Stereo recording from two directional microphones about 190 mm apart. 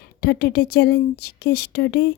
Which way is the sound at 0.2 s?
55° left (ahead or behind).